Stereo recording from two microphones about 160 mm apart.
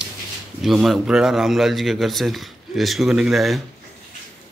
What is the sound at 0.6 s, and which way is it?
A man's voice, centre (ahead or behind).